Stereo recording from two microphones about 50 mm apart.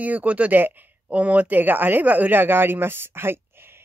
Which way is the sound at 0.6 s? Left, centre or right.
Right.